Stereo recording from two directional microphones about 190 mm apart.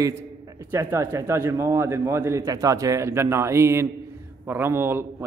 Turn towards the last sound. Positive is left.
turn(degrees=-10)  # may be behind; listen again after turning